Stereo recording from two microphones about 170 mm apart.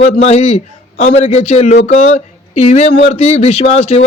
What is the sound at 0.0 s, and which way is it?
A man's voice, 40° left (ahead or behind).